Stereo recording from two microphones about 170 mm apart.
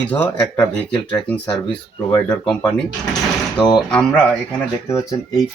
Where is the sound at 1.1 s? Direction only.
10° left (ahead or behind).